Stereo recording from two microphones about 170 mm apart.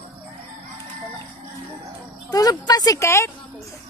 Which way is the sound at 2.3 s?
20° left (ahead or behind).